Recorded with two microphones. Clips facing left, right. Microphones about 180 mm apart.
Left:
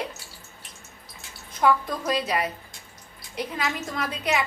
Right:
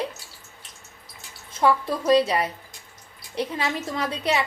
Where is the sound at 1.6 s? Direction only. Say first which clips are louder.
Right 2 dB; 30° right (ahead or behind).